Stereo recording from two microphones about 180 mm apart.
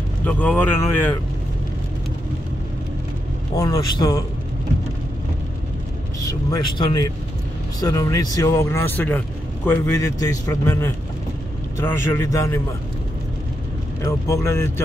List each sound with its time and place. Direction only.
0.2 s speech: 10° left (ahead or behind)
3.5 s speech: 20° left (ahead or behind)
6.2 s speech: 20° left (ahead or behind)
14.0 s speech: 15° left (ahead or behind)